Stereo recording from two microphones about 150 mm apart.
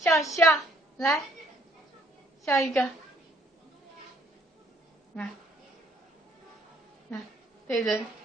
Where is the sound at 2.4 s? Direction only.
20° left (ahead or behind).